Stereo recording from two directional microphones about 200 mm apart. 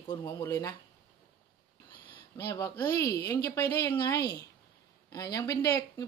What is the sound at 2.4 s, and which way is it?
Speech, 15° left (ahead or behind).